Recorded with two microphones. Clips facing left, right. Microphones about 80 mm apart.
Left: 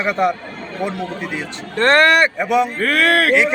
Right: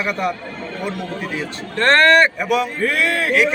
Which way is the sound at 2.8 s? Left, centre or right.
Left.